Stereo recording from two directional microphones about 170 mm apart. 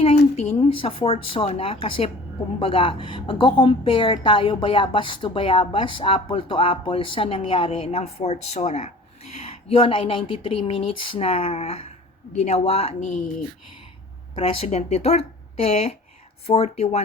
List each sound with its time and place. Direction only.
0.3 s a woman's voice: 35° left (ahead or behind)
14.3 s a woman's voice: 35° left (ahead or behind)